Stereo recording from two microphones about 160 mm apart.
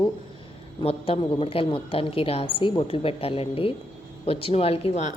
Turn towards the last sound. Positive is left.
turn(degrees=40)  # may be behind; listen again after turning